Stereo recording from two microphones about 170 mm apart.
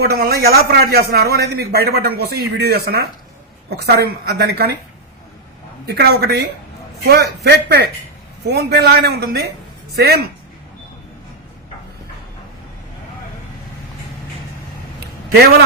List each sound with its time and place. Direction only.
0.0 s a man's voice: 65° right (ahead or behind)
5.9 s a man's voice: 70° right (ahead or behind)